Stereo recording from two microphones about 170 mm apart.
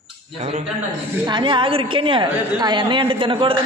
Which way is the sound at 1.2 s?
30° right (ahead or behind).